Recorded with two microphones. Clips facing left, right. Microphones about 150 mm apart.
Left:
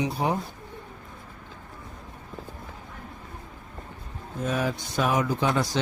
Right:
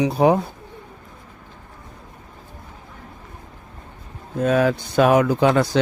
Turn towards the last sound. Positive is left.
turn(degrees=-70)  # may be behind; listen again after turning